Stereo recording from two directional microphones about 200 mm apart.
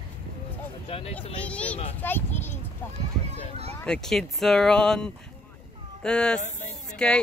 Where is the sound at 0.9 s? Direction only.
30° left (ahead or behind).